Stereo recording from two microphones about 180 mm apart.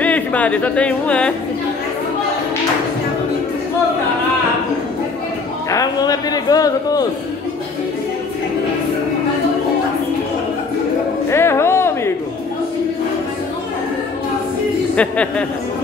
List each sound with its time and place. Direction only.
0.0 s speech: 10° left (ahead or behind)
5.7 s a man's voice: 20° left (ahead or behind)
11.2 s a sound: 15° left (ahead or behind)
15.0 s speech: 5° left (ahead or behind)